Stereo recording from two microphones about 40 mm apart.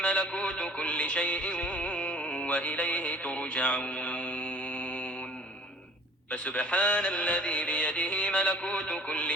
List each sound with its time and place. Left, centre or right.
0.0 s music: left
6.3 s music: left